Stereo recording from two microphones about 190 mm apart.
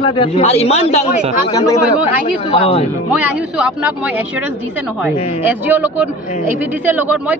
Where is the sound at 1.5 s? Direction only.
20° left (ahead or behind).